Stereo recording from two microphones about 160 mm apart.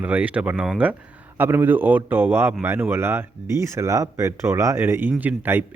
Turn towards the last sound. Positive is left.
turn(degrees=-10)  # may be behind; listen again after turning